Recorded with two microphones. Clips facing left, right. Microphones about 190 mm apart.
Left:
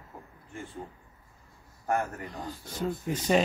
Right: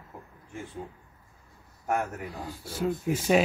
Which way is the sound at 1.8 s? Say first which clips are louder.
Even; 5° right (ahead or behind).